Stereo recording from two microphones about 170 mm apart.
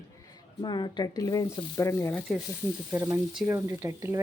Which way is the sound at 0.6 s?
25° left (ahead or behind).